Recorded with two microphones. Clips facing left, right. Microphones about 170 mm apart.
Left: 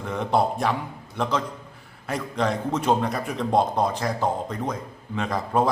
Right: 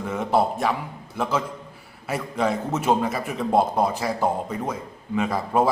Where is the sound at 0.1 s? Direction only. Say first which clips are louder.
Right 1 dB; 5° right (ahead or behind).